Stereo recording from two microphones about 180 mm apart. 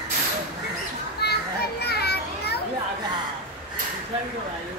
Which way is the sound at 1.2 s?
65° left (ahead or behind).